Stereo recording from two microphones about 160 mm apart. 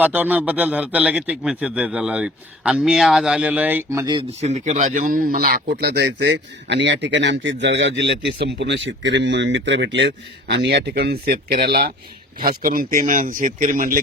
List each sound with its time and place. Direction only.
0.0 s a man's voice: 10° right (ahead or behind); by 4.3 s 25° right (ahead or behind)
4.3 s a man's voice: 45° right (ahead or behind); by 11.9 s 90° right
12.4 s speech: 60° right (ahead or behind)